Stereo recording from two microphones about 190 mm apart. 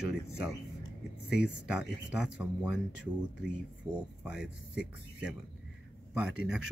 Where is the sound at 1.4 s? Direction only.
5° right (ahead or behind).